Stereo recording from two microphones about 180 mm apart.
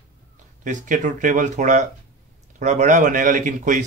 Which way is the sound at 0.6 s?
45° right (ahead or behind).